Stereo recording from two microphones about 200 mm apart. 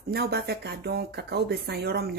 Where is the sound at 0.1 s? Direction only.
55° right (ahead or behind).